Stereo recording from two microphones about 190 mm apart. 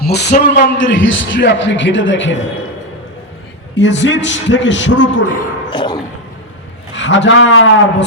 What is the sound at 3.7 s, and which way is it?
A man's voice, 70° left (ahead or behind).